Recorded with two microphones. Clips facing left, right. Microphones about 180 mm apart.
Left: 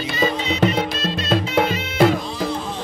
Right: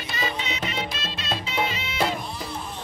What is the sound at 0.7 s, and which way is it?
Music, 40° left (ahead or behind).